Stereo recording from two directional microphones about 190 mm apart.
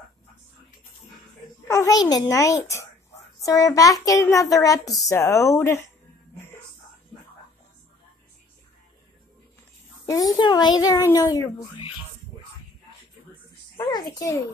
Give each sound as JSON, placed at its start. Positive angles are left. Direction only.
{"t": 1.7, "sound": "a child's voice", "side_deg": 15}
{"t": 10.0, "sound": "a child's voice", "side_deg": 20}
{"t": 14.1, "sound": "a child's voice", "side_deg": 20}